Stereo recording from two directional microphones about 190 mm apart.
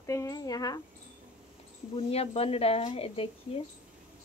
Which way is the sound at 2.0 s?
30° left (ahead or behind).